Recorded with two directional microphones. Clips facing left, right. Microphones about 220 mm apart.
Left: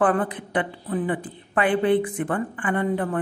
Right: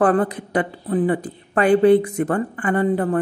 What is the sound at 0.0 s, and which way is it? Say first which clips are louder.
A woman's voice: right 4 dB; 40° right (ahead or behind).